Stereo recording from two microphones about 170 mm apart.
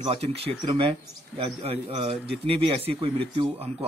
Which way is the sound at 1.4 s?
35° right (ahead or behind).